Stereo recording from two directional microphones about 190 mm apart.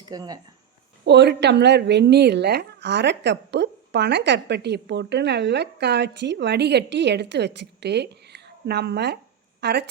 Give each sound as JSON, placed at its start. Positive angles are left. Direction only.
{"t": 0.1, "sound": "speech", "side_deg": -20}
{"t": 1.0, "sound": "speech", "side_deg": -65}